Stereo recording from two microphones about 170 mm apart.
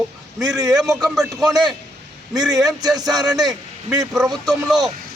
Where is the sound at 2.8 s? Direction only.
20° right (ahead or behind).